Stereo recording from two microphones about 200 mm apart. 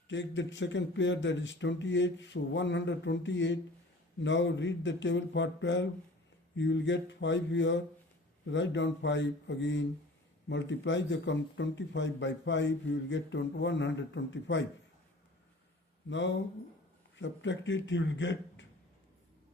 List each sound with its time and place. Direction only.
0.1 s speech: 65° left (ahead or behind)
16.0 s speech: 65° left (ahead or behind)